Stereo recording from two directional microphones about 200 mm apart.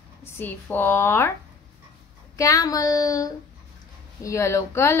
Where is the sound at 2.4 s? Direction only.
15° left (ahead or behind).